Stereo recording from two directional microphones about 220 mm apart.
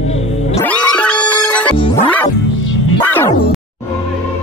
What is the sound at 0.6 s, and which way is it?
Music, 5° left (ahead or behind).